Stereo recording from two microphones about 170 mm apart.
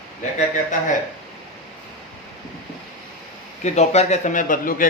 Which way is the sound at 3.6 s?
40° left (ahead or behind).